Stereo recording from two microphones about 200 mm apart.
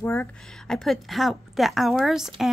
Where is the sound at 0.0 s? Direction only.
10° left (ahead or behind).